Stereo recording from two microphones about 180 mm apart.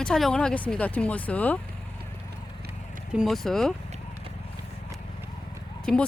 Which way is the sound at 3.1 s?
Centre (ahead or behind).